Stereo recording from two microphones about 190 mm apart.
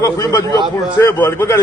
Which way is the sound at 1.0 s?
10° left (ahead or behind).